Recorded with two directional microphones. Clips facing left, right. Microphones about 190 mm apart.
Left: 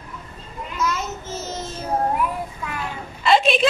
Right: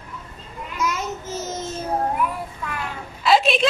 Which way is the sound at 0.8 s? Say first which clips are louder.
Even; 15° right (ahead or behind).